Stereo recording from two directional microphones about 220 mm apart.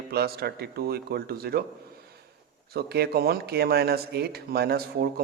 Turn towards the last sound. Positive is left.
turn(degrees=-45)  # may be behind; listen again after turning